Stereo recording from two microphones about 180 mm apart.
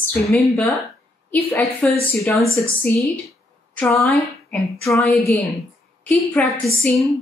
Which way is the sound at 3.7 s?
10° left (ahead or behind).